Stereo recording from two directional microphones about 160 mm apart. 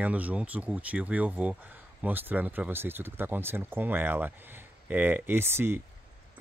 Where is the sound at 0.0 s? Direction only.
10° right (ahead or behind).